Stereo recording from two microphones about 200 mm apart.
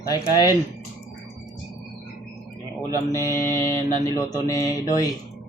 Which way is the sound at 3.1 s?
15° left (ahead or behind).